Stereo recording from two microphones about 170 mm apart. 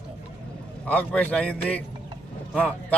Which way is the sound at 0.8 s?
10° left (ahead or behind).